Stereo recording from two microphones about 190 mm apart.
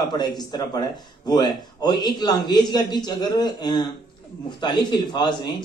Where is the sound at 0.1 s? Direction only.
20° left (ahead or behind).